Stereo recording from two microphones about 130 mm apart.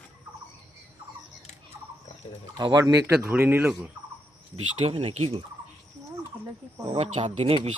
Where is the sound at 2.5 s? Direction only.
35° right (ahead or behind).